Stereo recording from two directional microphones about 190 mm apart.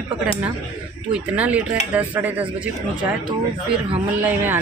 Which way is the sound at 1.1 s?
5° right (ahead or behind).